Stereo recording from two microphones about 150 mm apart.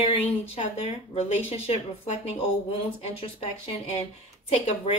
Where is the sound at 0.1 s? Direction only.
45° left (ahead or behind).